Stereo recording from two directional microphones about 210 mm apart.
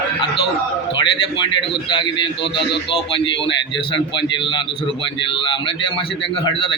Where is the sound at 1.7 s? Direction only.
20° left (ahead or behind).